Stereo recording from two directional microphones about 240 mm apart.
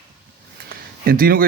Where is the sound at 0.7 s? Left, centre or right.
Right.